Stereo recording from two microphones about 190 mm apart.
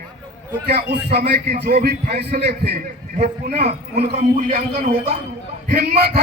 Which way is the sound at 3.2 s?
35° right (ahead or behind).